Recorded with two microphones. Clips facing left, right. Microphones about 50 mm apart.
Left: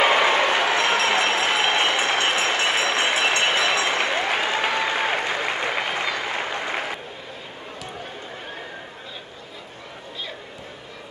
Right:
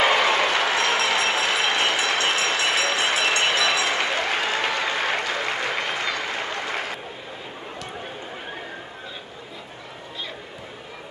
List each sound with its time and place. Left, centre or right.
0.0 s a sound: left
0.7 s applause: left
6.0 s applause: centre